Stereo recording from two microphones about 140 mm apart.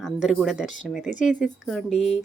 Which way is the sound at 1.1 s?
60° left (ahead or behind).